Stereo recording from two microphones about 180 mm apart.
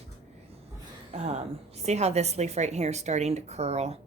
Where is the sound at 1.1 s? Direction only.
40° right (ahead or behind).